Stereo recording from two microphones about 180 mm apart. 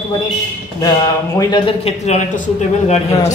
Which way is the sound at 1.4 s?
25° left (ahead or behind).